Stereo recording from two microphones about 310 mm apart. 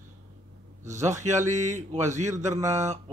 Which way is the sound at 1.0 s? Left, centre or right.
Right.